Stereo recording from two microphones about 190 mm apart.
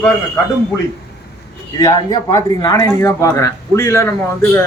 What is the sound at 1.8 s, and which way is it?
A man's voice, 20° left (ahead or behind).